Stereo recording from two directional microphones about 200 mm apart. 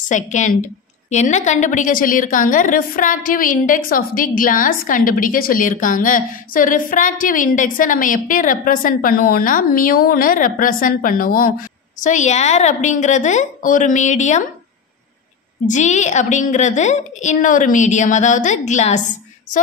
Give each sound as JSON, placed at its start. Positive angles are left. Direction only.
{"t": 0.1, "sound": "a woman's voice", "side_deg": 40}
{"t": 15.6, "sound": "a woman's voice", "side_deg": 35}